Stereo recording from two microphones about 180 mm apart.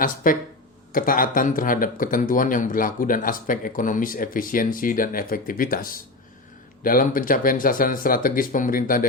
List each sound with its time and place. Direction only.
0.0 s speech: 50° left (ahead or behind)